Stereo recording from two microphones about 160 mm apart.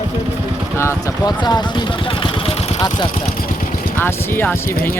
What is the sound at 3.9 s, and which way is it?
Speech, 15° left (ahead or behind).